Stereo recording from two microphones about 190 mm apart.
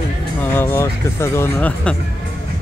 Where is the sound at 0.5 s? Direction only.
10° left (ahead or behind).